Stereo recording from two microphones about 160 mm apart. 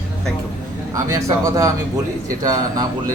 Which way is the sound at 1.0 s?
20° right (ahead or behind).